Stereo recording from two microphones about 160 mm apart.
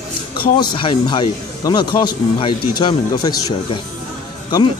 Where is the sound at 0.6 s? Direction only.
30° left (ahead or behind).